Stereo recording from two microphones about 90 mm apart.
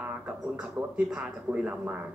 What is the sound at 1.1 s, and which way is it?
Speech, 15° right (ahead or behind).